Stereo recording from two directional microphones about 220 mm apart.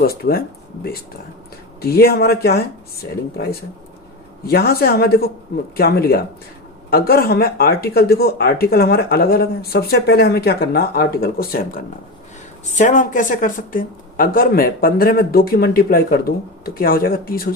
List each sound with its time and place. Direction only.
0.0 s speech: 45° left (ahead or behind)
1.8 s speech: 45° left (ahead or behind)